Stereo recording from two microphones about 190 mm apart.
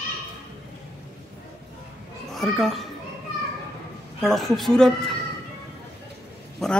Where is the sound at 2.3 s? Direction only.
Centre (ahead or behind).